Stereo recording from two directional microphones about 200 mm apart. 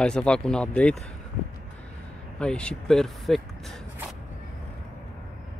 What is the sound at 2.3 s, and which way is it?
Speech, 5° left (ahead or behind).